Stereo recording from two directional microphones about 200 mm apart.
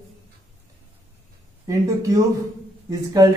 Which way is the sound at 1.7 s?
15° right (ahead or behind).